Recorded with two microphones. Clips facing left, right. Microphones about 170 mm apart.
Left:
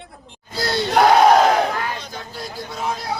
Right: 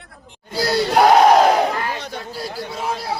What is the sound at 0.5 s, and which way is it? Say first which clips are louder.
Speech: right 3 dB; 10° right (ahead or behind).